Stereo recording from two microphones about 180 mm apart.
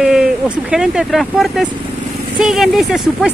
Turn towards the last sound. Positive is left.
turn(degrees=0)  # may be behind; listen again after turning